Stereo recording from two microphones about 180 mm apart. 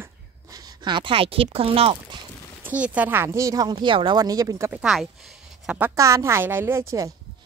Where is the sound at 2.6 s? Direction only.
10° right (ahead or behind).